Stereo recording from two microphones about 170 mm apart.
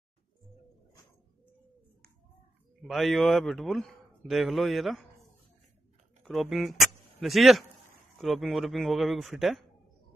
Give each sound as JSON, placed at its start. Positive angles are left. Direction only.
{"t": 2.8, "sound": "a man's voice", "side_deg": 0}
{"t": 6.2, "sound": "a man's voice", "side_deg": 0}